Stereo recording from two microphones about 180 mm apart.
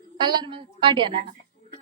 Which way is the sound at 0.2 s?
25° right (ahead or behind).